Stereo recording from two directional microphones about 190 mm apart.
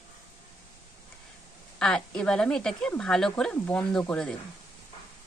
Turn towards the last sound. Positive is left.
turn(degrees=5)  # may be behind; listen again after turning